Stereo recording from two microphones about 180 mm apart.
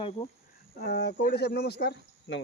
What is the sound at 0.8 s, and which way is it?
Speech, 65° left (ahead or behind).